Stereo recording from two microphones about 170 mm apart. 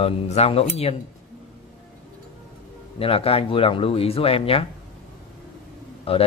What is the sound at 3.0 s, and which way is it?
Speech, 35° left (ahead or behind).